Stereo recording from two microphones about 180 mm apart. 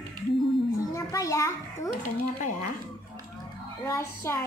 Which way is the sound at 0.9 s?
15° left (ahead or behind).